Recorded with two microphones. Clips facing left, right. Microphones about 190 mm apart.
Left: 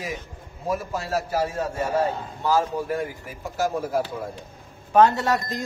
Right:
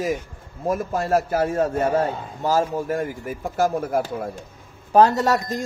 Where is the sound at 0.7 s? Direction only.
50° right (ahead or behind).